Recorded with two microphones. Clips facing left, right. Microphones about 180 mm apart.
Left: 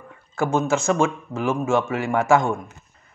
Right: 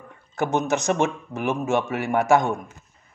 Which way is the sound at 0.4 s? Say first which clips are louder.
Left 2 dB; 20° right (ahead or behind).